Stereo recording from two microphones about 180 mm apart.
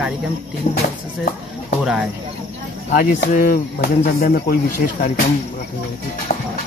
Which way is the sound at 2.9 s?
55° left (ahead or behind).